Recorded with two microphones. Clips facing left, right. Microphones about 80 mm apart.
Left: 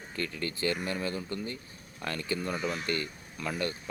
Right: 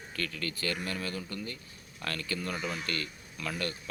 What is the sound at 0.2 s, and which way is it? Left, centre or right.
Speech, left.